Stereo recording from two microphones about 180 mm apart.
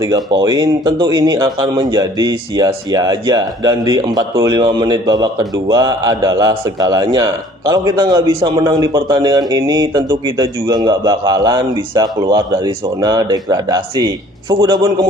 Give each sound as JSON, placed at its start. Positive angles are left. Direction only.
{"t": 0.0, "sound": "speech", "side_deg": -25}